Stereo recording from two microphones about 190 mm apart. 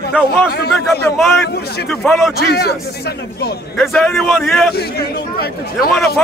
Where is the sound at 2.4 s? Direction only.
60° left (ahead or behind).